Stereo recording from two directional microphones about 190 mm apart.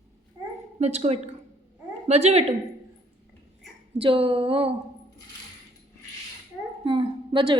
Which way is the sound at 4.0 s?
30° right (ahead or behind).